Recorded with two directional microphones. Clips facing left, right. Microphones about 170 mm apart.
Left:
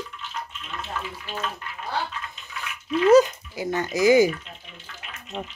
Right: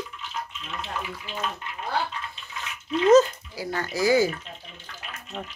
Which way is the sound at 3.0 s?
15° left (ahead or behind).